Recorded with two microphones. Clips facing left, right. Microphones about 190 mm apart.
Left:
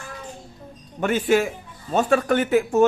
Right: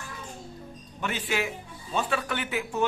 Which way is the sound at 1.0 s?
50° left (ahead or behind).